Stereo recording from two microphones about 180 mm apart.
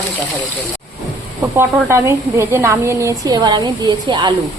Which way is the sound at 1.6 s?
15° right (ahead or behind).